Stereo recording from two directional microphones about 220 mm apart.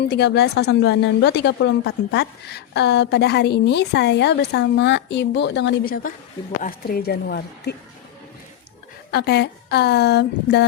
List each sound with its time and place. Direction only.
0.0 s speech: 50° left (ahead or behind)
9.1 s speech: 45° left (ahead or behind)